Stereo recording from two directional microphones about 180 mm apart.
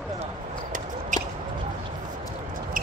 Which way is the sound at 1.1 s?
45° right (ahead or behind).